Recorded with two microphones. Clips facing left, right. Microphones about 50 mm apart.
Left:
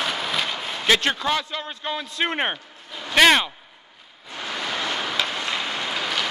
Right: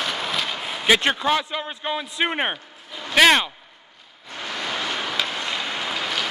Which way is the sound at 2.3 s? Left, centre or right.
Centre.